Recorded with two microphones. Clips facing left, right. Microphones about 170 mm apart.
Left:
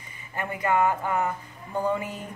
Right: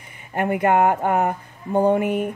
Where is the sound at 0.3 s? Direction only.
65° right (ahead or behind).